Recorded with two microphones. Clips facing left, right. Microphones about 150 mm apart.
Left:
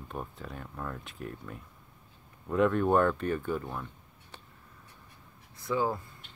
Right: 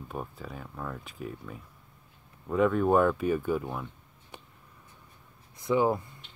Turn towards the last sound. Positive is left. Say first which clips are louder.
# right 5 dB
turn(degrees=-20)  # may be behind; listen again after turning